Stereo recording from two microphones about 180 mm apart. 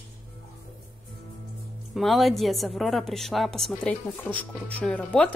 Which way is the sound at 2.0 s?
Centre (ahead or behind).